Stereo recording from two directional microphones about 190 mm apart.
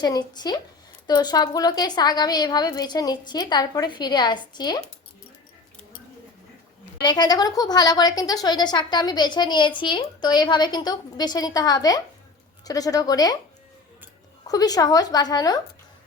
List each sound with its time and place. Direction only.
0.0 s a woman's voice: 20° left (ahead or behind)
7.0 s a woman's voice: 20° left (ahead or behind)
14.4 s a woman's voice: 20° left (ahead or behind)